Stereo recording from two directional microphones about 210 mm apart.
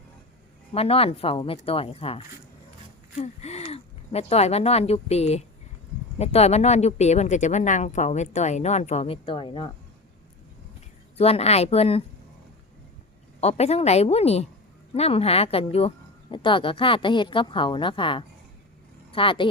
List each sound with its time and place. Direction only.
0.7 s speech: 25° left (ahead or behind)
11.2 s speech: 30° left (ahead or behind)
13.4 s speech: 30° left (ahead or behind)